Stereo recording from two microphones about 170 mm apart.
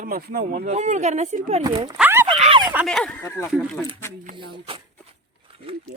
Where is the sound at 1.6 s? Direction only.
20° right (ahead or behind).